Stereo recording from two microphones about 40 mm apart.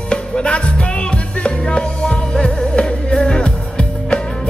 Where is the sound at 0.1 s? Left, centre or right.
Left.